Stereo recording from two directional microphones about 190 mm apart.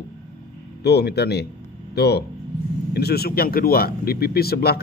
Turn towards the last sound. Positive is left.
turn(degrees=55)  # may be behind; listen again after turning